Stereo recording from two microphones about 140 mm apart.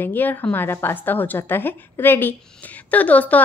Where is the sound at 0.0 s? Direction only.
15° left (ahead or behind).